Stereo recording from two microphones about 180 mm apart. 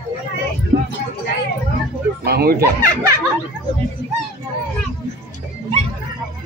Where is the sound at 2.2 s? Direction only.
60° right (ahead or behind).